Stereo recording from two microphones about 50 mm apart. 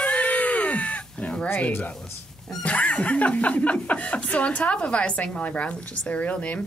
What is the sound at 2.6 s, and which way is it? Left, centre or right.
A woman's voice, left.